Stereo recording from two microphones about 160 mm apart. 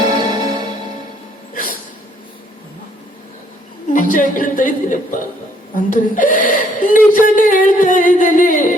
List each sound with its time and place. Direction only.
0.1 s music: 25° right (ahead or behind)
3.9 s speech: 55° left (ahead or behind)